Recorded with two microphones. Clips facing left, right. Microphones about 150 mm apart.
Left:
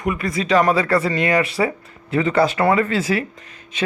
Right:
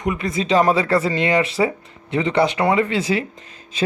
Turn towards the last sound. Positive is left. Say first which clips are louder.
# right 2 dB
turn(degrees=-30)  # may be behind; listen again after turning